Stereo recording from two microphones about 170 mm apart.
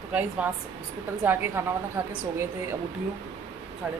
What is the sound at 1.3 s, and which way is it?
Speech, 15° right (ahead or behind).